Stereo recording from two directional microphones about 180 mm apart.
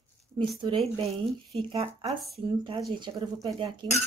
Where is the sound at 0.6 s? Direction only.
30° right (ahead or behind).